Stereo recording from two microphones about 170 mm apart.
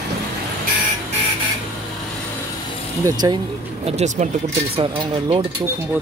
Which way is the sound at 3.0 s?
25° right (ahead or behind).